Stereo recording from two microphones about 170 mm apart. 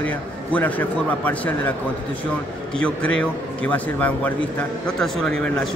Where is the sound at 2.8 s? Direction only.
5° left (ahead or behind).